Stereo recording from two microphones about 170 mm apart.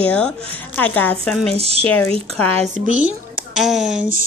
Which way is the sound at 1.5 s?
35° right (ahead or behind).